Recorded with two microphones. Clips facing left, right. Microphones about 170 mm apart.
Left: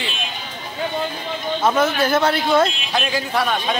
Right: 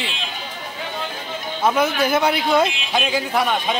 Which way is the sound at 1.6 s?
10° right (ahead or behind).